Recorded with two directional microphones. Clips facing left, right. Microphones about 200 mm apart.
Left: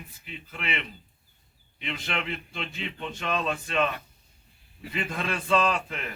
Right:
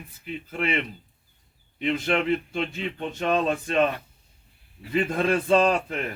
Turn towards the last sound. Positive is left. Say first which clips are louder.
# right 5 dB
turn(degrees=-45)  # may be behind; listen again after turning